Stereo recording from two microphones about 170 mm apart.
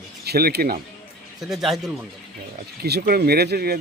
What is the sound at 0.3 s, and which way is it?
Speech, 65° right (ahead or behind).